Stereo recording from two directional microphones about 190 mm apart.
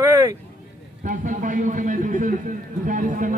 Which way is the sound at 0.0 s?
15° right (ahead or behind).